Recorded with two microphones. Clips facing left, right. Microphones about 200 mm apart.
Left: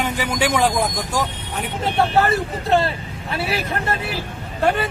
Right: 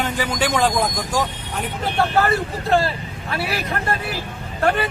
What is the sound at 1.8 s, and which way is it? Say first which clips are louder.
Speech: left 1 dB; 25° left (ahead or behind).